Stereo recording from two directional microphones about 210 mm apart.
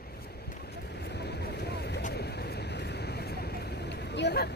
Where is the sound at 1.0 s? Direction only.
50° left (ahead or behind).